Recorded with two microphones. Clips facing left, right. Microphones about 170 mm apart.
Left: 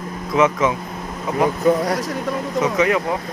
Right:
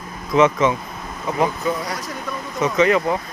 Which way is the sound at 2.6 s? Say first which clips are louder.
Right 2 dB; 5° left (ahead or behind).